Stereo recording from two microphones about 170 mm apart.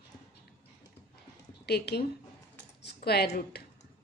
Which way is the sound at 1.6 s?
70° left (ahead or behind).